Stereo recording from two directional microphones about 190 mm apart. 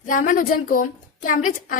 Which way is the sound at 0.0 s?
45° left (ahead or behind).